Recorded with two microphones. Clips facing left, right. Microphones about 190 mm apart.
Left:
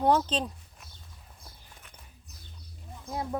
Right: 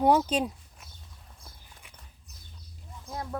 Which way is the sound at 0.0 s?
10° right (ahead or behind).